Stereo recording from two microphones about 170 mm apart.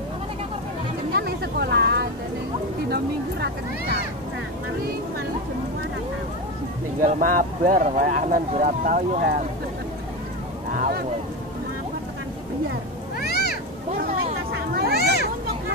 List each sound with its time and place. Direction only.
1.1 s vehicle: 70° right (ahead or behind)
2.9 s a sound: 75° right (ahead or behind)
7.0 s speech: 50° right (ahead or behind)
10.8 s a sound: 65° right (ahead or behind)
13.2 s cat: 70° left (ahead or behind)
14.9 s children playing: 70° left (ahead or behind)